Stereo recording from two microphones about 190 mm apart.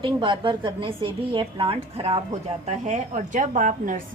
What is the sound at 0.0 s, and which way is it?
A woman's voice, 25° right (ahead or behind).